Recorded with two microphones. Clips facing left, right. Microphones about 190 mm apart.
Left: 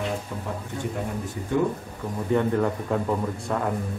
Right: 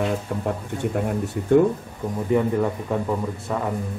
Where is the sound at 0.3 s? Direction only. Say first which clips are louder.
Right 6 dB; 55° right (ahead or behind).